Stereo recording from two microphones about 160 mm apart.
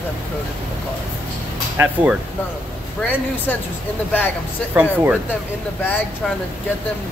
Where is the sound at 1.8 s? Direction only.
10° right (ahead or behind).